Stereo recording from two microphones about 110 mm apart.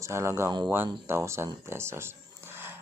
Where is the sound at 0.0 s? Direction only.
25° right (ahead or behind).